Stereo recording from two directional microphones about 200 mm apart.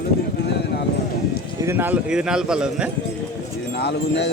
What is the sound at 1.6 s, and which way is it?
A man's voice, 10° right (ahead or behind).